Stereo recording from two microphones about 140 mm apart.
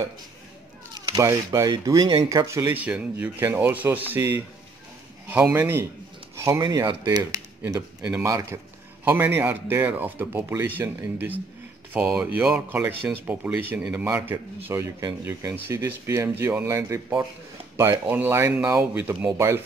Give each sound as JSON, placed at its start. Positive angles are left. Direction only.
{"t": 1.1, "sound": "speech", "side_deg": -25}
{"t": 8.0, "sound": "speech", "side_deg": -10}
{"t": 8.3, "sound": "speech", "side_deg": -20}
{"t": 18.0, "sound": "speech", "side_deg": -15}